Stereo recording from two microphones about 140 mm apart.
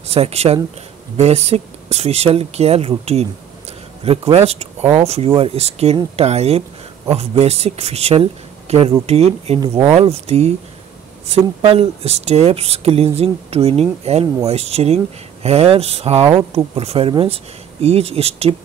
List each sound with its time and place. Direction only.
0.1 s speech: 45° right (ahead or behind)